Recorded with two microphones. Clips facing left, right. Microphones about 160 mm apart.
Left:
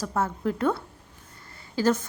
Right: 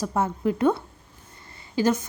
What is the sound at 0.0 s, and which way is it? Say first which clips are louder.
A woman's voice: right 3 dB; 20° right (ahead or behind).